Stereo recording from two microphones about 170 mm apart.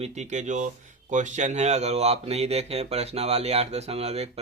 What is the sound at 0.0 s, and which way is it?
Speech, 45° right (ahead or behind).